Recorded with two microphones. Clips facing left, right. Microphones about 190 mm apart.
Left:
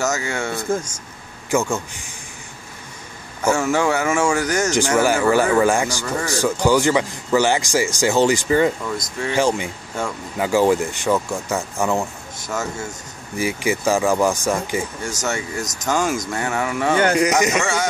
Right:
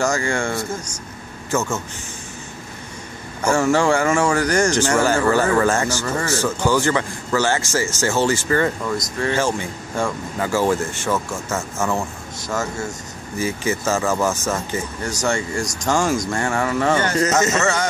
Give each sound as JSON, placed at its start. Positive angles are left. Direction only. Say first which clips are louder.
{"t": 0.0, "sound": "speech", "louder": "right 2 dB", "side_deg": 5}
{"t": 3.4, "sound": "speech", "louder": "right 1 dB", "side_deg": 5}